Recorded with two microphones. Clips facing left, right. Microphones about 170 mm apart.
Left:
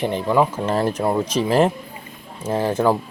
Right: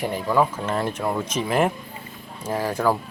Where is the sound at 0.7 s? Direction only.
35° left (ahead or behind).